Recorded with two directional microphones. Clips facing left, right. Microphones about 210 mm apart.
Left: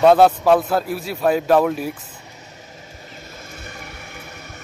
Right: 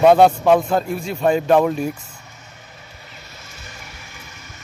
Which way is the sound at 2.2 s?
35° left (ahead or behind).